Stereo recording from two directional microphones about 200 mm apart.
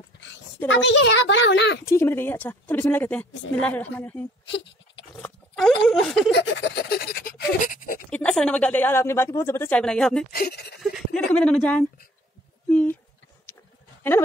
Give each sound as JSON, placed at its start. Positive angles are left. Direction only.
{"t": 0.7, "sound": "a child's voice", "side_deg": 65}
{"t": 1.9, "sound": "a woman's voice", "side_deg": 15}
{"t": 4.5, "sound": "a sound", "side_deg": 60}
{"t": 5.2, "sound": "pig", "side_deg": 0}
{"t": 5.9, "sound": "speech", "side_deg": 5}
{"t": 6.3, "sound": "pant", "side_deg": 65}
{"t": 8.1, "sound": "a woman's voice", "side_deg": 5}
{"t": 10.3, "sound": "pant", "side_deg": 50}
{"t": 10.8, "sound": "speech", "side_deg": 5}